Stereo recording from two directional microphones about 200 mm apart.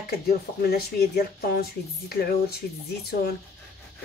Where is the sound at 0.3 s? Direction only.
50° left (ahead or behind).